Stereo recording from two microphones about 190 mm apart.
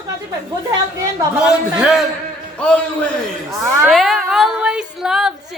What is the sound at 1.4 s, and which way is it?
A woman's voice, 5° right (ahead or behind).